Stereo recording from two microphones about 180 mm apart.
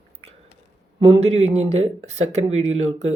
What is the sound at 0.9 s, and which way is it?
Speech, 30° right (ahead or behind).